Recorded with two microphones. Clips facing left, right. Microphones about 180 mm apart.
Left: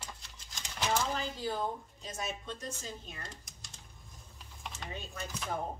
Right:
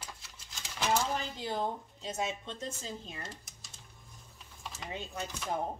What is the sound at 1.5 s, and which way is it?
Speech, 20° right (ahead or behind).